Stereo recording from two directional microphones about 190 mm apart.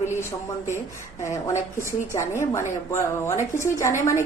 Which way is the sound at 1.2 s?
15° left (ahead or behind).